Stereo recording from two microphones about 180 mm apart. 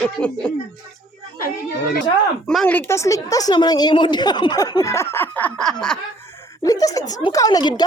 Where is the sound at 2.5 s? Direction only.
5° left (ahead or behind).